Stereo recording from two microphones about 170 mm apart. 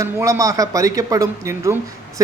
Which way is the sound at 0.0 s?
20° right (ahead or behind).